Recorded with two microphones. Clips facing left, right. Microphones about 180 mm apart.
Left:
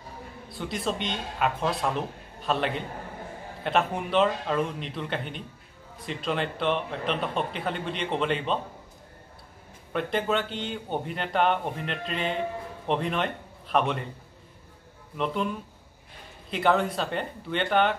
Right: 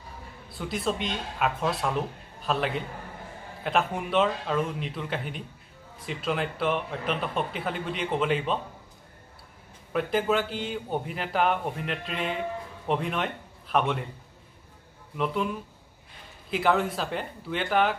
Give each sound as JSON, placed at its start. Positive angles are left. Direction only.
{"t": 0.5, "sound": "a man's voice", "side_deg": 0}
{"t": 9.9, "sound": "a man's voice", "side_deg": -5}
{"t": 15.1, "sound": "a man's voice", "side_deg": -5}